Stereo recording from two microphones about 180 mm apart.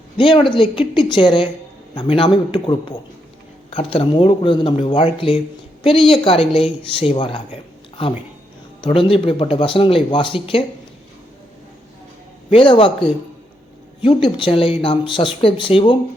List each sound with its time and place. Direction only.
0.2 s speech: 30° left (ahead or behind)
12.5 s speech: 30° left (ahead or behind)